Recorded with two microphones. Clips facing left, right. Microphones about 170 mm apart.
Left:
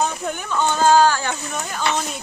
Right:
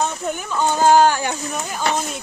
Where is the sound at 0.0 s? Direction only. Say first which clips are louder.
Even; centre (ahead or behind); by 1.3 s 20° right (ahead or behind).